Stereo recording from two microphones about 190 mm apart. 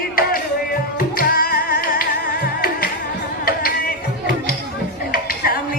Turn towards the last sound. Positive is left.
turn(degrees=50)  # may be behind; listen again after turning